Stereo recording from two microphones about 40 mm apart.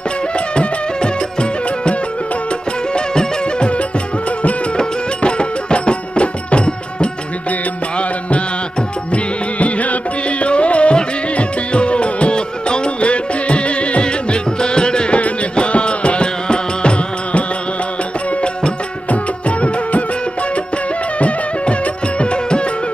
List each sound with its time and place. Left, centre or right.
0.6 s music: left
9.1 s music: left
21.2 s music: left